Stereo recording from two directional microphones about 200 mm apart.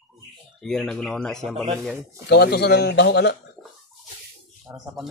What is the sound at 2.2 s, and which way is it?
Speech, 55° left (ahead or behind).